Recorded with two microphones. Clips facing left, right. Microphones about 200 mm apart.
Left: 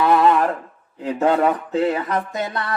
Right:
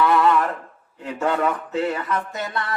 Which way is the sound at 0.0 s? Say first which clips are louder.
Left 2 dB; 35° left (ahead or behind).